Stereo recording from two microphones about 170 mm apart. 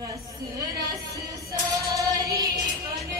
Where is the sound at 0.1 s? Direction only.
20° right (ahead or behind).